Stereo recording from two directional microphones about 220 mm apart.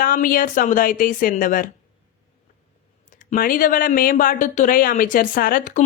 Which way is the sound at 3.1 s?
35° left (ahead or behind).